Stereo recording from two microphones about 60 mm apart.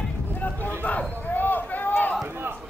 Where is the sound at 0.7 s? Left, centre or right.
Left.